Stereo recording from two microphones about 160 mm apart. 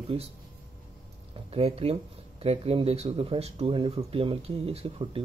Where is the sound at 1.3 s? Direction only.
35° right (ahead or behind).